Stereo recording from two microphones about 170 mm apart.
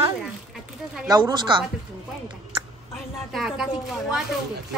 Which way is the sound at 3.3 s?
5° right (ahead or behind).